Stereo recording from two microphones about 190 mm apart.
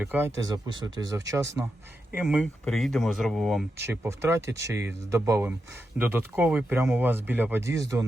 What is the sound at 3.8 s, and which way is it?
Speech, 15° right (ahead or behind).